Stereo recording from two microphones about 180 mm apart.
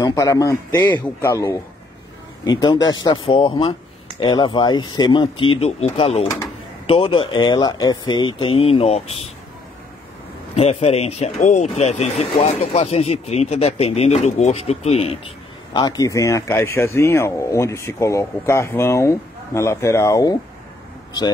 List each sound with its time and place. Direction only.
0.0 s speech: 20° left (ahead or behind); by 9.3 s 35° left (ahead or behind)
10.5 s speech: 35° left (ahead or behind)
15.7 s speech: 20° left (ahead or behind)